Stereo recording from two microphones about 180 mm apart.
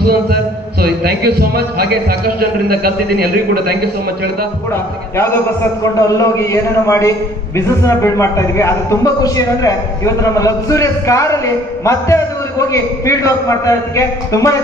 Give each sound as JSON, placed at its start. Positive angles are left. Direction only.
{"t": 0.0, "sound": "a man's voice", "side_deg": -60}
{"t": 5.9, "sound": "a man's voice", "side_deg": 20}